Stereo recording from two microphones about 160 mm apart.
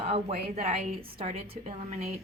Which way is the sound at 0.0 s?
35° right (ahead or behind).